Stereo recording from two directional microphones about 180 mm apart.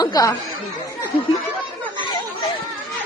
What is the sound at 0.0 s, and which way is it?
Chatter, 20° left (ahead or behind).